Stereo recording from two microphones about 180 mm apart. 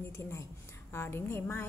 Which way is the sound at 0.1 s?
15° left (ahead or behind).